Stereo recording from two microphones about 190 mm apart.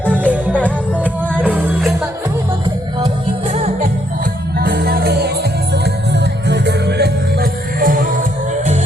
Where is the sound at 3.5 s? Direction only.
35° right (ahead or behind).